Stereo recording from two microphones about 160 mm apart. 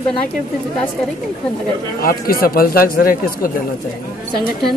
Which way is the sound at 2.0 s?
65° left (ahead or behind).